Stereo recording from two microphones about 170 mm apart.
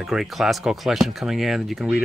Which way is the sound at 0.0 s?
Centre (ahead or behind).